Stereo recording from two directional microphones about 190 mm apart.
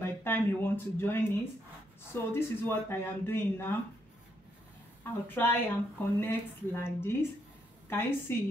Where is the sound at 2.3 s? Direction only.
10° left (ahead or behind).